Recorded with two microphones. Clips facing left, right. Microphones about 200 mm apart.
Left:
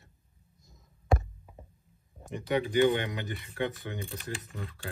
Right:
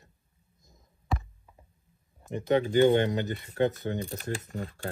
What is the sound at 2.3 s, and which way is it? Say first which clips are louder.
Speech: right 4 dB; 45° right (ahead or behind).